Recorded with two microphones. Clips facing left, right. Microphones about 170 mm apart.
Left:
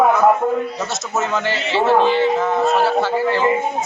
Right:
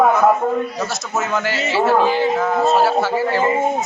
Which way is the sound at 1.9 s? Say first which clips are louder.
Left 3 dB; 5° right (ahead or behind).